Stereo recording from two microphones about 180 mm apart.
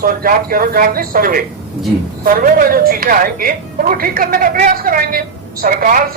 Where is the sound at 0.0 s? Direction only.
55° right (ahead or behind).